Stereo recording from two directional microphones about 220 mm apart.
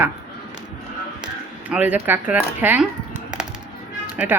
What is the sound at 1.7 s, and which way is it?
Speech, 5° right (ahead or behind).